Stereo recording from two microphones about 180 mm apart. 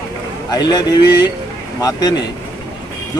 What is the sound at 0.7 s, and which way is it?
Speech, 20° left (ahead or behind).